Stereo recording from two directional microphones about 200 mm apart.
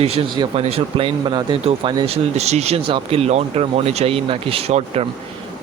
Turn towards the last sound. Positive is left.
turn(degrees=-30)  # may be behind; listen again after turning